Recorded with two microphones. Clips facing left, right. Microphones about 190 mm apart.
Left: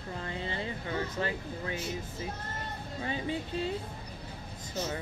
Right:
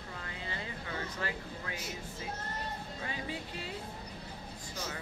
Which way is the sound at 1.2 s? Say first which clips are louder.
Left 4 dB; 25° left (ahead or behind).